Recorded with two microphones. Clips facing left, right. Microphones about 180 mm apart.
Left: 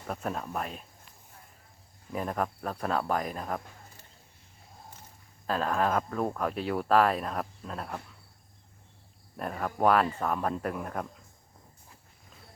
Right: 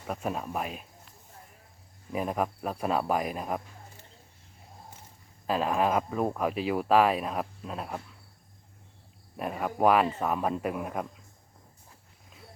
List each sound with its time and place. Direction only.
0.1 s speech: 10° right (ahead or behind)
2.1 s speech: 10° right (ahead or behind)
5.5 s speech: 10° right (ahead or behind)
9.4 s speech: 10° right (ahead or behind)